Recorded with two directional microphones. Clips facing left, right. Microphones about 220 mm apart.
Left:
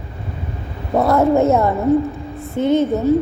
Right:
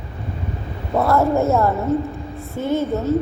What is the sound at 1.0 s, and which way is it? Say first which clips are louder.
A woman's voice: left 3 dB; 20° left (ahead or behind).